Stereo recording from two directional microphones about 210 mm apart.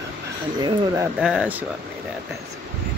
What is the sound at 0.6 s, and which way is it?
Speech, 20° right (ahead or behind).